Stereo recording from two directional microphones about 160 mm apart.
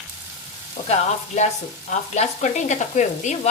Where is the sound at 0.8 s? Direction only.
45° left (ahead or behind).